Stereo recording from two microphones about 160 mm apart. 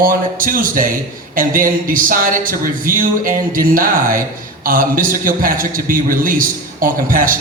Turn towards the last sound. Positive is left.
turn(degrees=-60)  # may be behind; listen again after turning